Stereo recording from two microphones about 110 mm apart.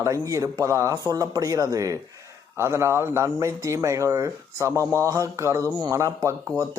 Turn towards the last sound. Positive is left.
turn(degrees=-30)  # may be behind; listen again after turning